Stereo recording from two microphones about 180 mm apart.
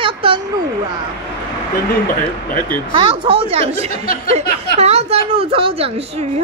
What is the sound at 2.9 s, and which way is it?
A woman's voice, 30° right (ahead or behind).